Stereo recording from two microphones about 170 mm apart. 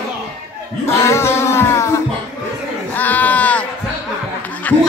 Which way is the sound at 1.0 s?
15° left (ahead or behind).